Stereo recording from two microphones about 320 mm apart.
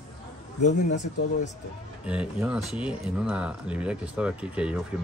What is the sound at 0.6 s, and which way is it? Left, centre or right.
Speech, left.